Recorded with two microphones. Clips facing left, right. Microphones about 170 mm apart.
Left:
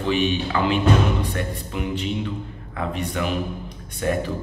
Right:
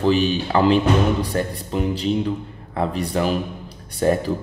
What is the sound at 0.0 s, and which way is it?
Speech, 35° right (ahead or behind).